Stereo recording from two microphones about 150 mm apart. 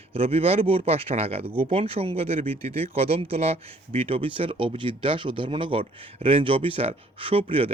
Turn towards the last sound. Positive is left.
turn(degrees=-40)  # may be behind; listen again after turning